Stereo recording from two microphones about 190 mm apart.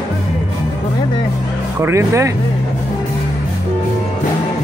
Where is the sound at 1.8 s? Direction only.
15° right (ahead or behind).